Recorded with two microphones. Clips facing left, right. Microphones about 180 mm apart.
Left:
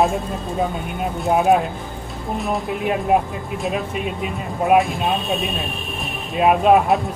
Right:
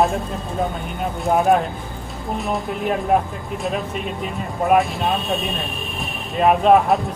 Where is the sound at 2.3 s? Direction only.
Centre (ahead or behind).